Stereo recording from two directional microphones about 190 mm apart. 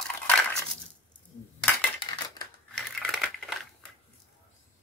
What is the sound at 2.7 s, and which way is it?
Crushing, 5° left (ahead or behind).